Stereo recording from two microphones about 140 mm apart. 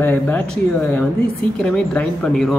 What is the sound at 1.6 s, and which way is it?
Speech, 5° left (ahead or behind).